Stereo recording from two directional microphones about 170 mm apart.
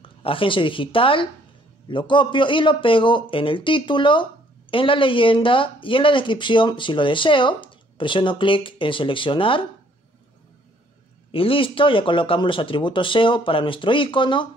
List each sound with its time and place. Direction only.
0.0 s a man's voice: 30° left (ahead or behind)
11.3 s a man's voice: 30° left (ahead or behind)